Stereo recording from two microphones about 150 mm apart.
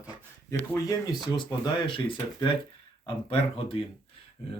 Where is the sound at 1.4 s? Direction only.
30° left (ahead or behind).